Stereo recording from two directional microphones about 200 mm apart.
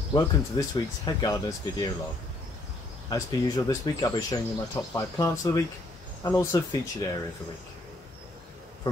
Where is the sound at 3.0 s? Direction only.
15° left (ahead or behind).